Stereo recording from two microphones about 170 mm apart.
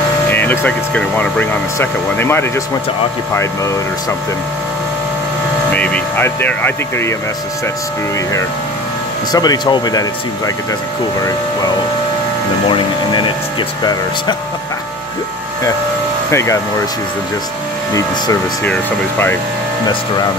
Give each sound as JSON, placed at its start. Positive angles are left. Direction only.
{"t": 0.3, "sound": "speech", "side_deg": 10}
{"t": 5.7, "sound": "speech", "side_deg": 10}
{"t": 9.3, "sound": "speech", "side_deg": 25}
{"t": 12.6, "sound": "speech", "side_deg": 30}
{"t": 16.3, "sound": "speech", "side_deg": 15}
{"t": 17.9, "sound": "speech", "side_deg": 20}